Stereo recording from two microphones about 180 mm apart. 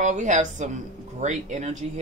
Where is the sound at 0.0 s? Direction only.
40° right (ahead or behind).